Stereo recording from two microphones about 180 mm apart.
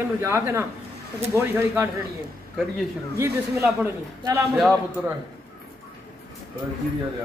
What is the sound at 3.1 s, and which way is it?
Speech, 15° right (ahead or behind).